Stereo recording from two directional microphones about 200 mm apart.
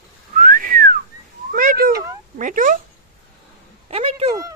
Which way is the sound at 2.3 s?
40° right (ahead or behind).